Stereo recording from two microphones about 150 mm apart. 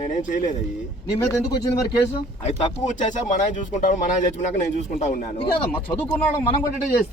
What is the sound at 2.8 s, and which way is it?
Speech, 55° left (ahead or behind).